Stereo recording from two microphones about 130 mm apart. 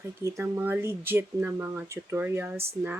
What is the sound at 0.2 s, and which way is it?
Speech, 20° right (ahead or behind).